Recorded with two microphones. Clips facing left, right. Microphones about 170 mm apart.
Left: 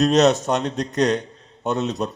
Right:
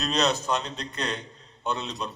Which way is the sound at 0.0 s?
45° left (ahead or behind).